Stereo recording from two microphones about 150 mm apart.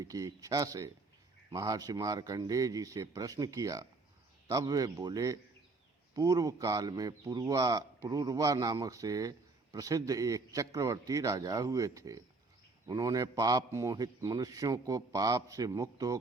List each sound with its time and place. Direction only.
0.0 s a man's voice: 25° right (ahead or behind)